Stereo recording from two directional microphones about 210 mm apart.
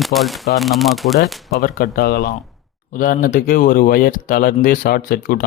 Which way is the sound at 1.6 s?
45° left (ahead or behind).